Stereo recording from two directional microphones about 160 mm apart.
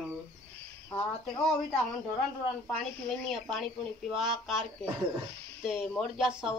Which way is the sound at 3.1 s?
Centre (ahead or behind).